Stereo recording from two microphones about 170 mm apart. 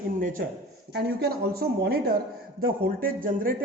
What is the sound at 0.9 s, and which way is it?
A man's voice, 70° right (ahead or behind).